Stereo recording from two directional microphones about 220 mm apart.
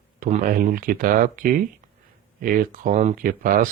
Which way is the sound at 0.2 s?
35° right (ahead or behind).